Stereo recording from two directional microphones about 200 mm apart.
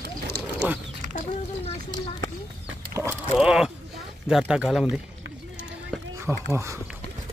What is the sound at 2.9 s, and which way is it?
Livestock, 15° right (ahead or behind).